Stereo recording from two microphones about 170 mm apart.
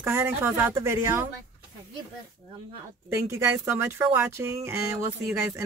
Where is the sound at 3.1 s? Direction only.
15° right (ahead or behind).